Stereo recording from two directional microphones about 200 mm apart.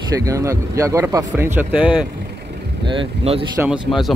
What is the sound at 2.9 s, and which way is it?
Speech, 25° right (ahead or behind).